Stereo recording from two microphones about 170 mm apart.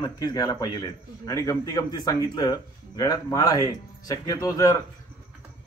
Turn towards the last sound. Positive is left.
turn(degrees=20)  # may be behind; listen again after turning